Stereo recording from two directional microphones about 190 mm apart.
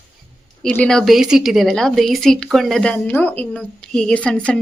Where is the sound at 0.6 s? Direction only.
5° left (ahead or behind).